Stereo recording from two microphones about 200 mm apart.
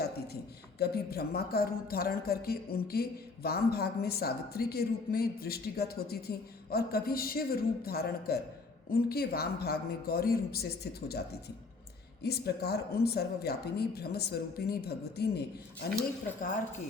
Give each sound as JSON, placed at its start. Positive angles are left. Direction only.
{"t": 0.8, "sound": "speech", "side_deg": 50}
{"t": 12.2, "sound": "speech", "side_deg": 55}